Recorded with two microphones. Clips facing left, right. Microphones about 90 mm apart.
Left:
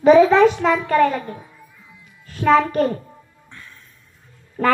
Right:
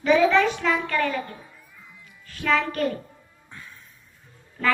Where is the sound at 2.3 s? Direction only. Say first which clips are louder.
Left 8 dB; 40° left (ahead or behind).